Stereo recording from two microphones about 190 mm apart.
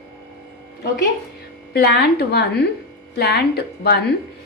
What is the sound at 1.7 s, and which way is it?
A woman's voice, 55° left (ahead or behind).